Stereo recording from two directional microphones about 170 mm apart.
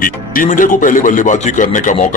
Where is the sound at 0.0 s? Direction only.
55° left (ahead or behind).